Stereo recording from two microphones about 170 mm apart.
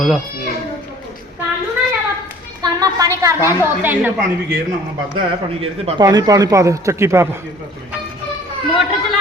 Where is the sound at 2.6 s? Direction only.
20° right (ahead or behind).